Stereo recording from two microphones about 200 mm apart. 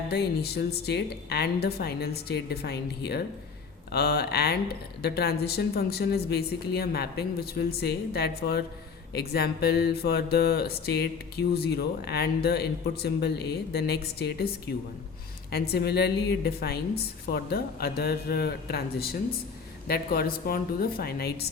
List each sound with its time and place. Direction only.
0.1 s speech: 55° left (ahead or behind)
15.5 s speech: 55° left (ahead or behind)